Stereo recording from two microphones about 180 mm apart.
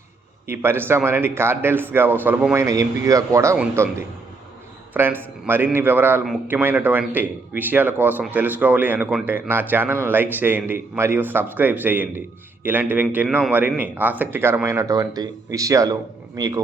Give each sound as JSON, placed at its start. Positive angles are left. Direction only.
{"t": 0.4, "sound": "speech", "side_deg": -15}